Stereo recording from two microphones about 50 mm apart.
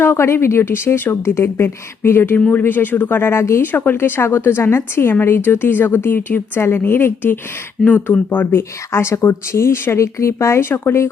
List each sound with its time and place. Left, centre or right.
0.0 s speech: left
1.1 s a woman's voice: left
3.6 s a woman's voice: left
5.5 s a woman's voice: left
8.5 s speech: left